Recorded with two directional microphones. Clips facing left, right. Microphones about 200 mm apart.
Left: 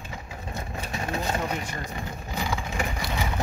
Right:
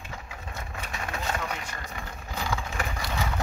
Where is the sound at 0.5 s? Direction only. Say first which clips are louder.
Left 5 dB; 35° left (ahead or behind).